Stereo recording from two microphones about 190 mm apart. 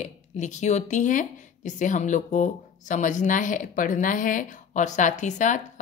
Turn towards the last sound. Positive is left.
turn(degrees=40)  # may be behind; listen again after turning